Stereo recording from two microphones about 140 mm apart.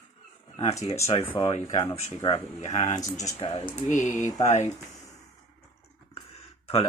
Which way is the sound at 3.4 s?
45° left (ahead or behind).